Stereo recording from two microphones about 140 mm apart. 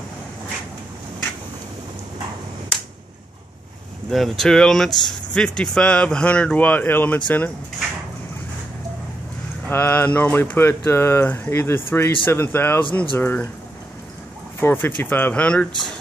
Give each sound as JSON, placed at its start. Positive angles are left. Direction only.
{"t": 4.1, "sound": "speech", "side_deg": 0}
{"t": 9.7, "sound": "speech", "side_deg": 15}
{"t": 14.6, "sound": "speech", "side_deg": 15}